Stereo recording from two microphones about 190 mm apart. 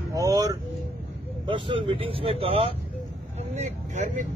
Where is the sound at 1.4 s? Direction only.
25° right (ahead or behind).